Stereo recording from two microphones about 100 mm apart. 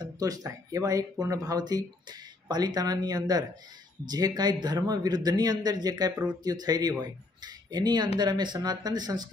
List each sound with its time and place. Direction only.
0.0 s speech: 35° right (ahead or behind)